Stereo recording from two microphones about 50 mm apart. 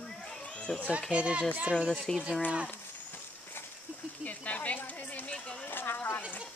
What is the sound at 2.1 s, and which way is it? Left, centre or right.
Speech, centre.